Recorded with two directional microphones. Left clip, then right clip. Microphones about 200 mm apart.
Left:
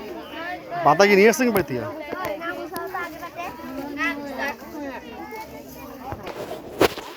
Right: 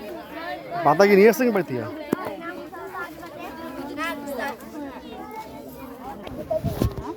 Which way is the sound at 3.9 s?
60° right (ahead or behind).